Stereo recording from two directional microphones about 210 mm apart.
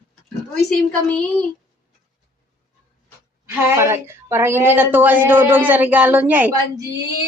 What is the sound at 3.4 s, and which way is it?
A woman's voice, 10° right (ahead or behind).